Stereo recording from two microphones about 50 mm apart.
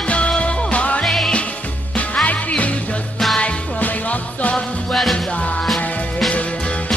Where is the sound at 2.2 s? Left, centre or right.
Left.